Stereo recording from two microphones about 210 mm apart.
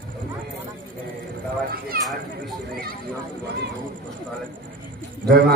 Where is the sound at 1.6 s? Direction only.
45° right (ahead or behind).